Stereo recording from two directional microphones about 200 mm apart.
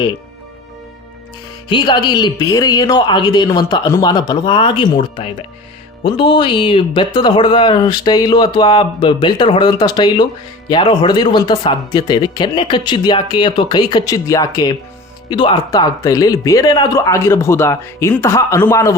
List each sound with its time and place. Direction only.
1.7 s speech: 20° left (ahead or behind)